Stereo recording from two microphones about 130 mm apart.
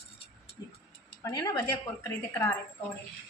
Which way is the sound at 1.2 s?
30° left (ahead or behind).